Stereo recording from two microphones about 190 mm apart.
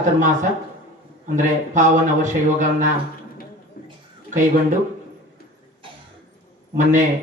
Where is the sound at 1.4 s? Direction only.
40° right (ahead or behind).